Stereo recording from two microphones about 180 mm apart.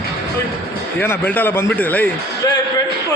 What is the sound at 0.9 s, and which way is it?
A man's voice, 10° left (ahead or behind).